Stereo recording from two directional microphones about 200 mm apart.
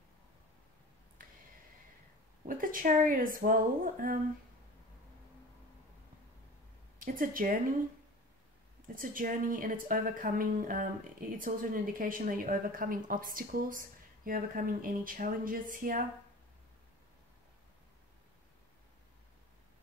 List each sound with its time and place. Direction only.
1.2 s a sound: 45° right (ahead or behind)
2.4 s a woman's voice: 45° right (ahead or behind)
7.0 s speech: 45° right (ahead or behind)
8.8 s a woman's voice: 45° right (ahead or behind)